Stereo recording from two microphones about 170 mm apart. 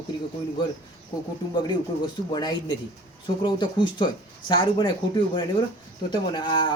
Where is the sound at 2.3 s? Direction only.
25° left (ahead or behind).